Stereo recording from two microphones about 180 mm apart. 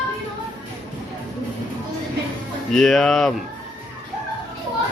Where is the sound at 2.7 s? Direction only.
Centre (ahead or behind).